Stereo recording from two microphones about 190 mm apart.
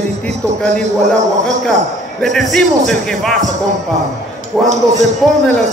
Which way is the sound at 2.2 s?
Centre (ahead or behind).